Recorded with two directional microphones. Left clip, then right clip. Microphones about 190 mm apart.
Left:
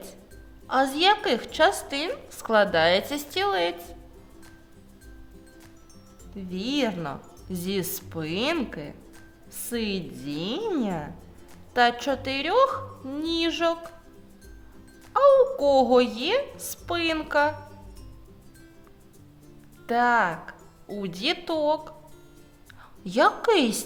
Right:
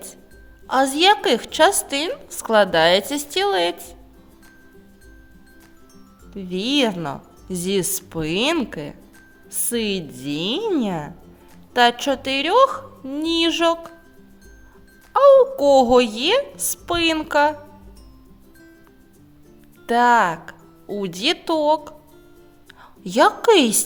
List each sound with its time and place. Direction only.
0.7 s a woman's voice: 35° right (ahead or behind)
6.3 s a woman's voice: 40° right (ahead or behind)
15.1 s a woman's voice: 35° right (ahead or behind)
19.9 s a woman's voice: 35° right (ahead or behind)